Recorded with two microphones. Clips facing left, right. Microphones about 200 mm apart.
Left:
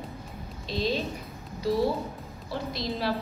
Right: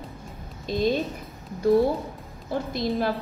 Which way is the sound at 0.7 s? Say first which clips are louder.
Right 5 dB; 50° right (ahead or behind).